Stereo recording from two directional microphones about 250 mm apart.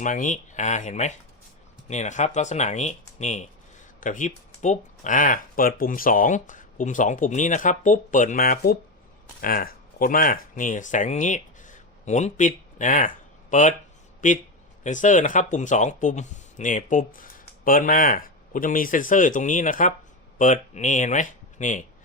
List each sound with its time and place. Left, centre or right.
0.0 s speech: left